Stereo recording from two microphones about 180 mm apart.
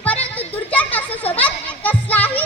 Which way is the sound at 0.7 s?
10° left (ahead or behind).